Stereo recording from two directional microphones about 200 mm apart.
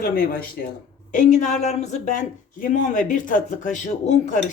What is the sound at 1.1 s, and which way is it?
Speech, 35° left (ahead or behind).